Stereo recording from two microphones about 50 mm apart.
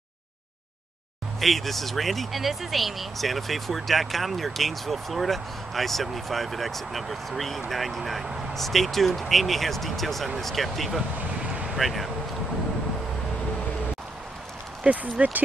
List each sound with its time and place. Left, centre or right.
1.4 s speech: centre
14.8 s speech: right